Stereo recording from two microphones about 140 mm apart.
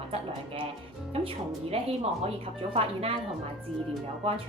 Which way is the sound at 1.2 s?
45° right (ahead or behind).